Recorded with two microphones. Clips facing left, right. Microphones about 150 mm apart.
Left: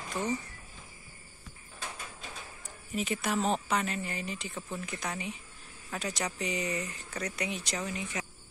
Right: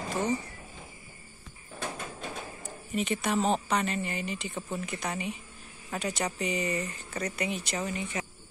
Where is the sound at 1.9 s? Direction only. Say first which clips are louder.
Right 7 dB; 50° right (ahead or behind).